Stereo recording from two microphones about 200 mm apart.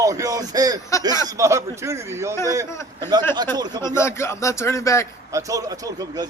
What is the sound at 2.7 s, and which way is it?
Speech, 15° left (ahead or behind).